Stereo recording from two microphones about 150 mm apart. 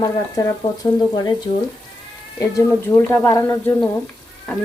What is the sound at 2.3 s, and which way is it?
Speech, 20° left (ahead or behind).